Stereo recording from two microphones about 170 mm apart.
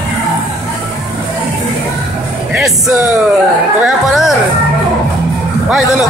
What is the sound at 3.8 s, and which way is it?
Chatter, centre (ahead or behind).